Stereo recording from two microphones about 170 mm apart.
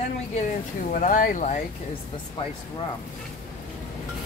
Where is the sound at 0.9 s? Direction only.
50° left (ahead or behind).